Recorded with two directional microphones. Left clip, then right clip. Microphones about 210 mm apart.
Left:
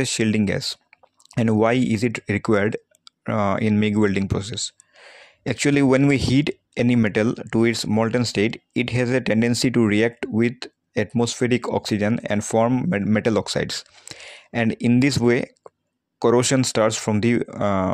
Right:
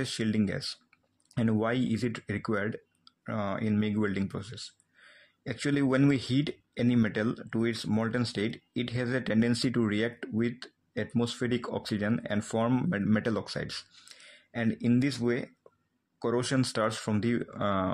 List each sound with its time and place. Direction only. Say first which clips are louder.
0.0 s speech: left 10 dB; 35° left (ahead or behind)
13.1 s speech: left 12 dB; 30° left (ahead or behind)